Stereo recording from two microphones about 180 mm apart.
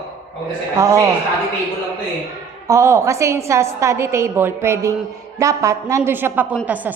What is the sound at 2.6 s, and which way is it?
A woman's voice, 15° right (ahead or behind).